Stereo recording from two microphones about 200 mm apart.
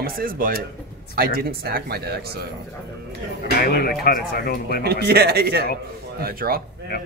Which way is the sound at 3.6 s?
50° left (ahead or behind).